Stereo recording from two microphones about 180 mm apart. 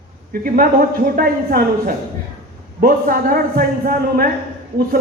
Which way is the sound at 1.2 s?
55° right (ahead or behind).